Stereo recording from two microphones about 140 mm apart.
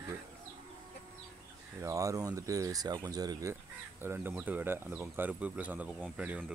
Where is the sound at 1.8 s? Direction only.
25° right (ahead or behind).